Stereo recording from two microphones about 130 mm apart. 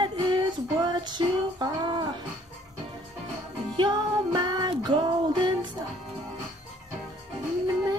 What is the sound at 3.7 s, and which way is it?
Music, 35° right (ahead or behind).